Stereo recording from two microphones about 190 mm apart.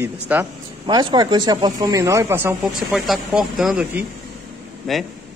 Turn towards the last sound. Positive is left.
turn(degrees=0)  # may be behind; listen again after turning